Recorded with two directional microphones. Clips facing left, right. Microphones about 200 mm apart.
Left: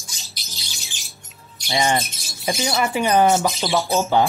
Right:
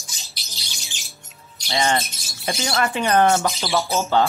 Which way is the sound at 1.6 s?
15° left (ahead or behind).